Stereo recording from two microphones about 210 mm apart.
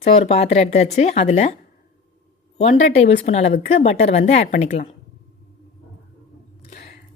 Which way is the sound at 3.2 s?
30° left (ahead or behind).